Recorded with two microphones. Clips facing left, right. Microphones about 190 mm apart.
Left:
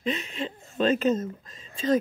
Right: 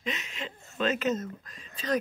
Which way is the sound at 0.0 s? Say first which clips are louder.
Left 7 dB; 30° left (ahead or behind).